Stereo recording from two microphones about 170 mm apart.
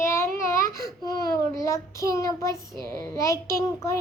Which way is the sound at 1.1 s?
20° left (ahead or behind).